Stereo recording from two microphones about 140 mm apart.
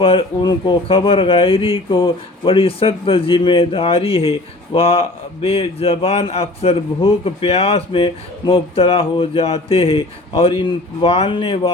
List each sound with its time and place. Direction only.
0.0 s speech: 40° left (ahead or behind)